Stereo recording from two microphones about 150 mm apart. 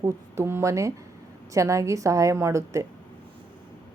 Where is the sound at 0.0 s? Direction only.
20° right (ahead or behind).